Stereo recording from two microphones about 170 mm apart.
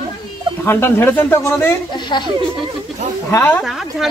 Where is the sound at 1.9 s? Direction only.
25° left (ahead or behind).